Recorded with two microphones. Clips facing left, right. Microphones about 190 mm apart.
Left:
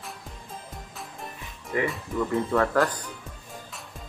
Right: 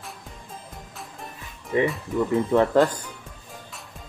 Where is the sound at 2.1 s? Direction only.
20° right (ahead or behind).